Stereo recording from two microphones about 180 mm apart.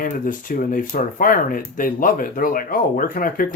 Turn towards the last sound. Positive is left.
turn(degrees=50)  # may be behind; listen again after turning